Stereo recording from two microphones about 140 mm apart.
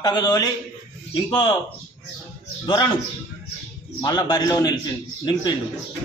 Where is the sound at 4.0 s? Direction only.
30° left (ahead or behind).